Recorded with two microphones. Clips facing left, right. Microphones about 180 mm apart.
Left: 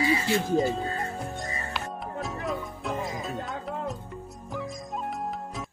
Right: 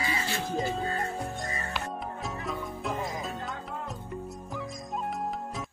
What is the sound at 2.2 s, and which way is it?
Music, centre (ahead or behind).